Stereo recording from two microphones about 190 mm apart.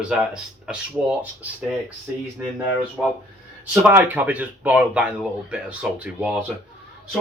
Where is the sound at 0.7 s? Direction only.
5° right (ahead or behind).